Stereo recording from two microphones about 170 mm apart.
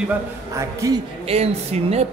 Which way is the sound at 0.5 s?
15° right (ahead or behind).